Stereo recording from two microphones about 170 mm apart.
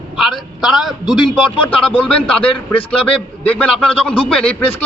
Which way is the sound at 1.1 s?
25° left (ahead or behind).